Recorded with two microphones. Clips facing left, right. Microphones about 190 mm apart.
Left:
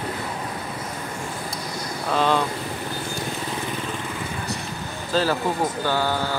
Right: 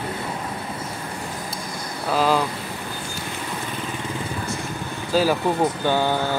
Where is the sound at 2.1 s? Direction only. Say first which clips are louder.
Right 1 dB; 5° right (ahead or behind).